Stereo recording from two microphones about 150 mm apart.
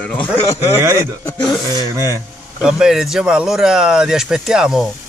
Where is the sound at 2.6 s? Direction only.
5° right (ahead or behind).